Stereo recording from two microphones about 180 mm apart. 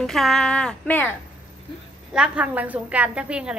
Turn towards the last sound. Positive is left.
turn(degrees=-5)  # may be behind; listen again after turning